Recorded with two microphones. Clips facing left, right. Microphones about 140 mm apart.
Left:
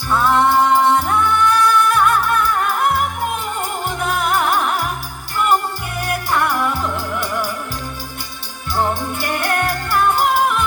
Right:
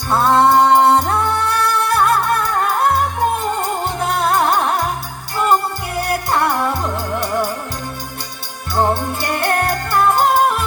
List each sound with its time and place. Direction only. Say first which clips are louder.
0.1 s music: right 3 dB; 35° right (ahead or behind)
6.0 s music: right 2 dB; 35° right (ahead or behind)
8.7 s music: right 3 dB; 30° right (ahead or behind)